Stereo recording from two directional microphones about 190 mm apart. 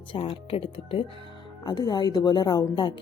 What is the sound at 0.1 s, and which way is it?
Speech, 30° left (ahead or behind).